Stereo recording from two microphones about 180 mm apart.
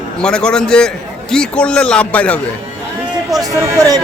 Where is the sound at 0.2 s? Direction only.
5° left (ahead or behind).